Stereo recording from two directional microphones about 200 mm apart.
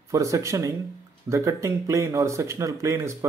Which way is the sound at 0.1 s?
15° right (ahead or behind).